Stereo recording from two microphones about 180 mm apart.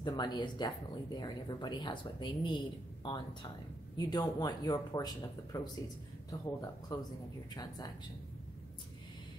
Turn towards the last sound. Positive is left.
turn(degrees=20)  # may be behind; listen again after turning